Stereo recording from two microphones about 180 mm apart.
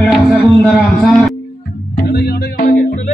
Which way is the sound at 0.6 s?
Centre (ahead or behind).